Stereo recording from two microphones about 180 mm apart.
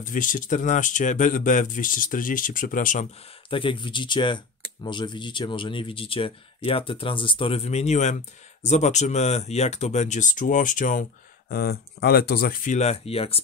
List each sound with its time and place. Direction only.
0.0 s speech: 45° left (ahead or behind)
3.4 s speech: 30° left (ahead or behind); by 12.7 s 60° left (ahead or behind)
12.7 s speech: 35° left (ahead or behind)